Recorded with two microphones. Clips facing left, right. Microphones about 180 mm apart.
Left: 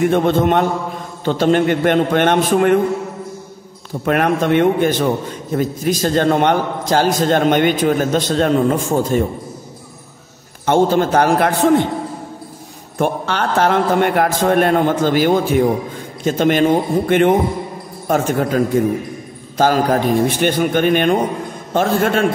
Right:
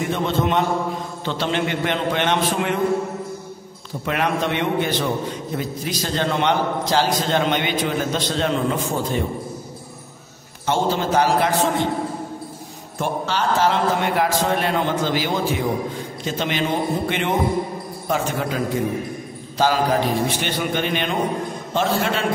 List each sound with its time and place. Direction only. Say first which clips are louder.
0.1 s a man's voice: left 7 dB; 55° left (ahead or behind)
4.0 s a man's voice: left 6 dB; 50° left (ahead or behind)
10.6 s a man's voice: left 7 dB; 55° left (ahead or behind)
13.0 s a man's voice: left 4 dB; 60° left (ahead or behind)